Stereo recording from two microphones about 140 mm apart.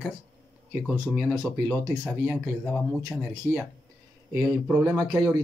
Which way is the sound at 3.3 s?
20° right (ahead or behind).